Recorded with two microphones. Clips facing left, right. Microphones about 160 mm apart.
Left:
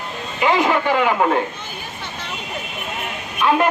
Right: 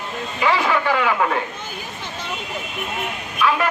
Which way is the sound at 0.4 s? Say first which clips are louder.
Left 3 dB; 20° left (ahead or behind).